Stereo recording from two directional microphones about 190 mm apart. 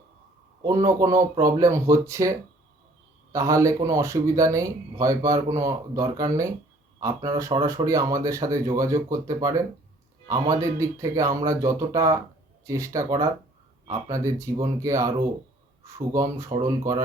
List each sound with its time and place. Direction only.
0.6 s speech: 15° right (ahead or behind)
3.3 s speech: 15° right (ahead or behind)